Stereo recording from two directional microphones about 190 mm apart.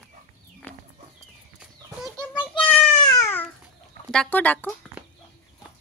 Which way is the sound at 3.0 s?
15° left (ahead or behind).